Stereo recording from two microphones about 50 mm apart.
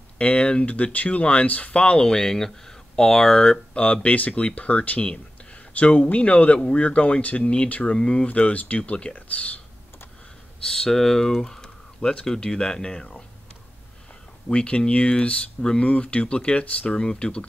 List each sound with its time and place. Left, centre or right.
0.2 s speech: left
8.3 s speech: left
10.6 s speech: centre
14.5 s speech: left